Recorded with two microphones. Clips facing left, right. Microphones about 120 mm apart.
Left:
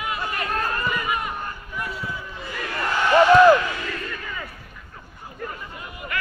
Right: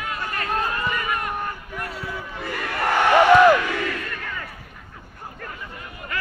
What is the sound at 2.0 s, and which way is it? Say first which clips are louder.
Crowd: right 2 dB; 65° right (ahead or behind).